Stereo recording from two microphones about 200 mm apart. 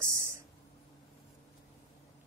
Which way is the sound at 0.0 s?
15° right (ahead or behind).